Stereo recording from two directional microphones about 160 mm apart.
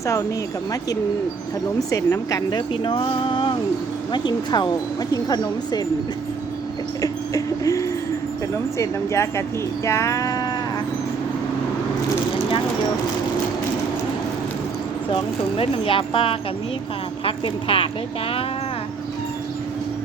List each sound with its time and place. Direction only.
1.9 s speech: 20° left (ahead or behind)
7.0 s a sound: 20° left (ahead or behind)
8.8 s speech: 15° left (ahead or behind)
15.1 s speech: 35° left (ahead or behind)